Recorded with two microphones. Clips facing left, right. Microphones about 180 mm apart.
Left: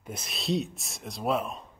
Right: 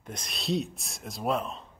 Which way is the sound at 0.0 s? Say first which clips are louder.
Left 1 dB; 5° left (ahead or behind).